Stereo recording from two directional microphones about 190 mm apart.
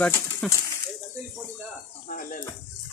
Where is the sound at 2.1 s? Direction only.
45° left (ahead or behind).